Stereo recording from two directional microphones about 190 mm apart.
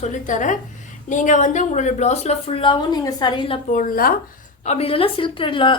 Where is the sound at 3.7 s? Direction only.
45° left (ahead or behind).